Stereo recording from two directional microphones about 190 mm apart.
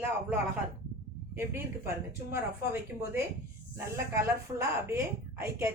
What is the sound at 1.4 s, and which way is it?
A woman's voice, 10° right (ahead or behind).